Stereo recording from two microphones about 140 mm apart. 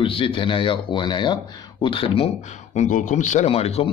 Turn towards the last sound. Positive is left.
turn(degrees=45)  # may be behind; listen again after turning